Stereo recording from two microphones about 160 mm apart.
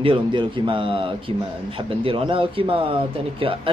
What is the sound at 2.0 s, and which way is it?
Speech, 35° right (ahead or behind).